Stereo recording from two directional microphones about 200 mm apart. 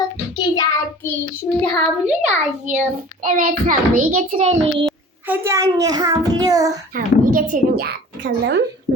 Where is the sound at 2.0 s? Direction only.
35° right (ahead or behind).